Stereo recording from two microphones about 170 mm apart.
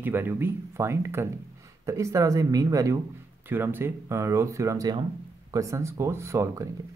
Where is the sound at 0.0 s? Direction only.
10° right (ahead or behind).